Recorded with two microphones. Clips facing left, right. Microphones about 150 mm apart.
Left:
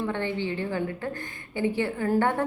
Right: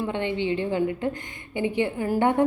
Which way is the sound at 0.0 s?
20° right (ahead or behind).